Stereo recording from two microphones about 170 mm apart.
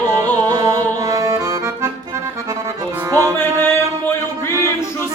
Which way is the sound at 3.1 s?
15° right (ahead or behind).